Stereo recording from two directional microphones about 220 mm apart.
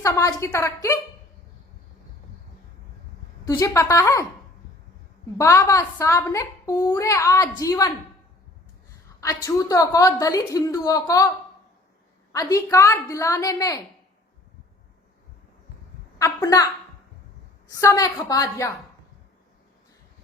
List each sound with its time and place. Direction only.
0.0 s a child's voice: 15° left (ahead or behind)
3.4 s a child's voice: 15° left (ahead or behind)
5.4 s a child's voice: 15° left (ahead or behind)
9.2 s a child's voice: 15° left (ahead or behind)
12.3 s a child's voice: 15° left (ahead or behind)
16.1 s a child's voice: 15° left (ahead or behind)